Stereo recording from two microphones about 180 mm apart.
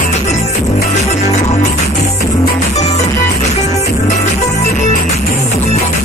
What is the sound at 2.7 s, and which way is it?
Music, 35° left (ahead or behind).